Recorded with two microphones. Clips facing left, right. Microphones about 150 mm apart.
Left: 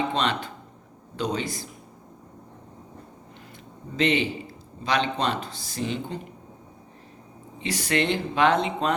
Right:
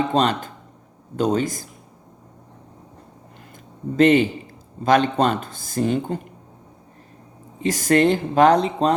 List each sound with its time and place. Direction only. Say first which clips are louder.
0.1 s speech: right 6 dB; 45° right (ahead or behind)
3.9 s speech: right 8 dB; 45° right (ahead or behind)
7.6 s speech: right 8 dB; 45° right (ahead or behind)